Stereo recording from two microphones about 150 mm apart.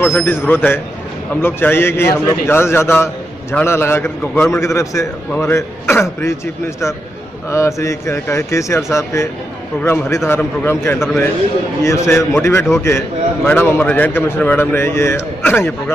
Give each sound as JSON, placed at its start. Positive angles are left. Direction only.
{"t": 0.0, "sound": "a man's voice", "side_deg": 15}